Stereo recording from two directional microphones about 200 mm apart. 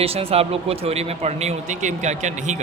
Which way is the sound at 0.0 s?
30° right (ahead or behind).